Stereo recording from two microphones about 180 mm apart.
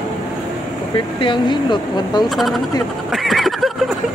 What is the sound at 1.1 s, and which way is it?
Speech, 25° left (ahead or behind).